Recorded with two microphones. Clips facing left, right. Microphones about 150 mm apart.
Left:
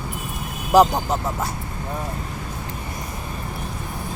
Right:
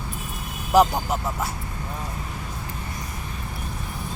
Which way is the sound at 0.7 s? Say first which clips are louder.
Left 3 dB; 30° left (ahead or behind).